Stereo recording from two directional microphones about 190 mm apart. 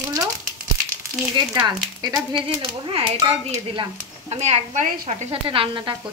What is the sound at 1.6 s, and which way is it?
A child's voice, 20° right (ahead or behind).